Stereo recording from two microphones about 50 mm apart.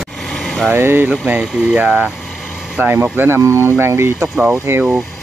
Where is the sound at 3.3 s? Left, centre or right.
Right.